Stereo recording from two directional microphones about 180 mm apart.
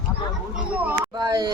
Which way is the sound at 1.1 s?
20° right (ahead or behind).